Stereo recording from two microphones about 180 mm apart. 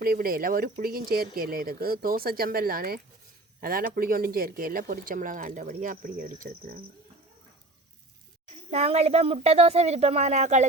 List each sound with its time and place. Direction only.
0.0 s speech: 55° right (ahead or behind)
8.7 s a woman's voice: 35° right (ahead or behind)